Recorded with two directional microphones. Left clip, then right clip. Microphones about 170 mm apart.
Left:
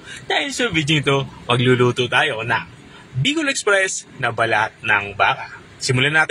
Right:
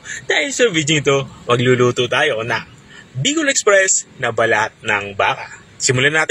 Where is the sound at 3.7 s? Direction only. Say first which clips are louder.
Right 5 dB; 20° right (ahead or behind).